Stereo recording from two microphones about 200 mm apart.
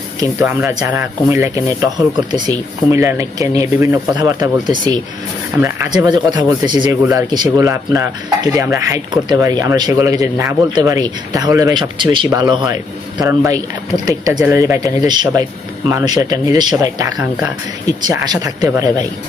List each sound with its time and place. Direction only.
0.2 s speech: 15° right (ahead or behind)